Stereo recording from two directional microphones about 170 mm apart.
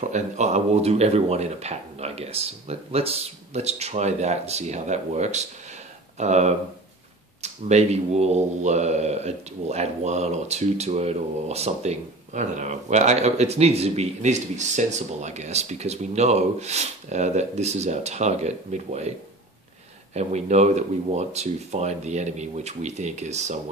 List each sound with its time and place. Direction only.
0.1 s speech: 40° right (ahead or behind)
20.2 s speech: 40° right (ahead or behind)